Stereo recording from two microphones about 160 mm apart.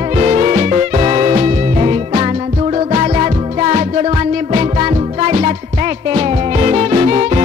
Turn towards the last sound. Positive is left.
turn(degrees=-40)  # may be behind; listen again after turning